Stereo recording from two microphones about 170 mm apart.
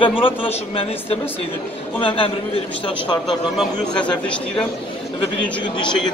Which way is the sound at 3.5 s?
5° left (ahead or behind).